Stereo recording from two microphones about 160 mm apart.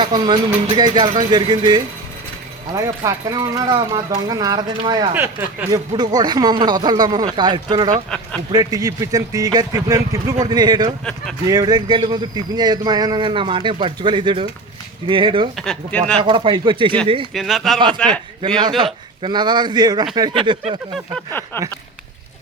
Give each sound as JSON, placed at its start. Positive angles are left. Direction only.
{"t": 0.0, "sound": "speech", "side_deg": -30}
{"t": 5.1, "sound": "speech", "side_deg": -15}
{"t": 6.0, "sound": "speech", "side_deg": -25}
{"t": 15.5, "sound": "speech", "side_deg": 5}
{"t": 16.2, "sound": "speech", "side_deg": -30}
{"t": 17.3, "sound": "speech", "side_deg": 0}
{"t": 18.8, "sound": "speech", "side_deg": -25}